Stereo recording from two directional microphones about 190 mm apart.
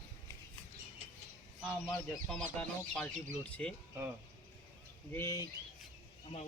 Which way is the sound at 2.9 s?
5° left (ahead or behind).